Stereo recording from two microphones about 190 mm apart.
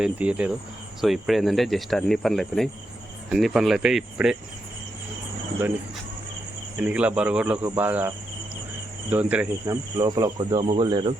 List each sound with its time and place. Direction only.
0.0 s speech: 5° right (ahead or behind)
6.7 s speech: 5° right (ahead or behind)
10.0 s speech: 20° right (ahead or behind)